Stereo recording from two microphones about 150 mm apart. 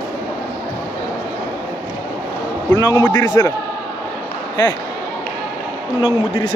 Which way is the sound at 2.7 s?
15° left (ahead or behind).